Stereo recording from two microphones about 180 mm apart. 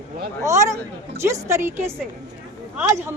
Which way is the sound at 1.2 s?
15° right (ahead or behind).